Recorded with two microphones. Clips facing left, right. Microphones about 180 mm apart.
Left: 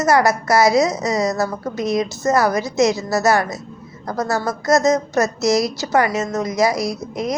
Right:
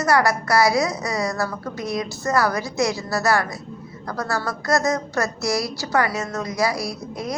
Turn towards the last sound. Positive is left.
turn(degrees=20)  # may be behind; listen again after turning